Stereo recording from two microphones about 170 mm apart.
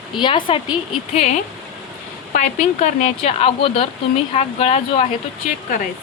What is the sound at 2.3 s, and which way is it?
Speech, 50° left (ahead or behind).